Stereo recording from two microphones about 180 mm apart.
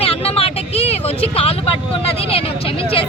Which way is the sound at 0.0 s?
30° left (ahead or behind).